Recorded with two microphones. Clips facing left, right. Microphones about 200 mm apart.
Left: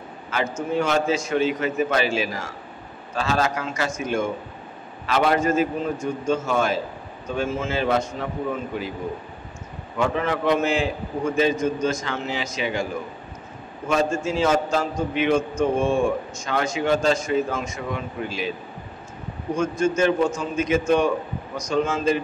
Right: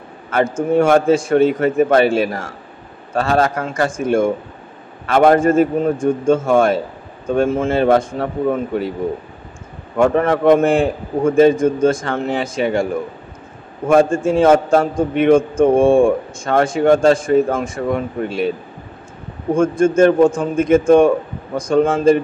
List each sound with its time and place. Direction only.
0.3 s a man's voice: 55° right (ahead or behind)
9.9 s a man's voice: 55° right (ahead or behind)
19.5 s a man's voice: 55° right (ahead or behind)